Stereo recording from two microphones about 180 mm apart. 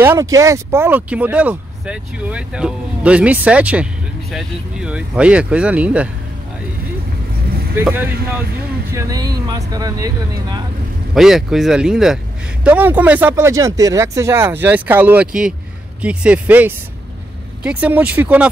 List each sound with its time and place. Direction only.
0.0 s speech: 15° right (ahead or behind)
7.7 s speech: 10° right (ahead or behind)
11.1 s speech: centre (ahead or behind)